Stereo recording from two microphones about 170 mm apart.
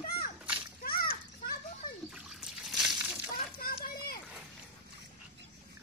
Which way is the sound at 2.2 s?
Centre (ahead or behind).